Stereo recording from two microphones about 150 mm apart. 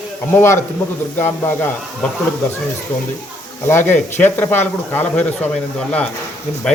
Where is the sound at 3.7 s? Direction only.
15° left (ahead or behind).